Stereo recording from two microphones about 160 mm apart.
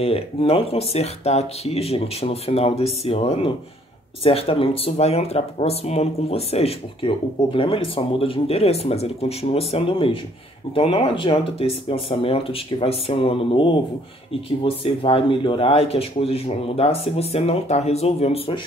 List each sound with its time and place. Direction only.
0.0 s speech: 35° left (ahead or behind)